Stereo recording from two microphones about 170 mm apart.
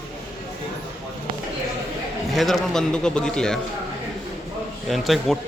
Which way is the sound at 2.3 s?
Centre (ahead or behind).